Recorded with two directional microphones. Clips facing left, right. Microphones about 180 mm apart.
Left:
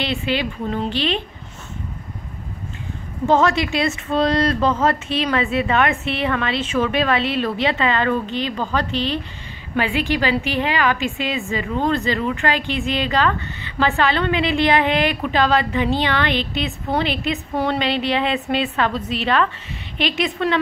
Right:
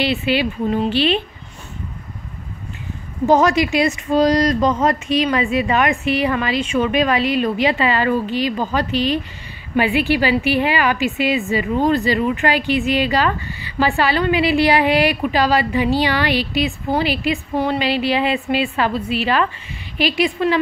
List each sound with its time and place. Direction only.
0.2 s a woman's voice: 10° right (ahead or behind)
3.3 s a woman's voice: 15° right (ahead or behind)
5.2 s a woman's voice: 5° right (ahead or behind)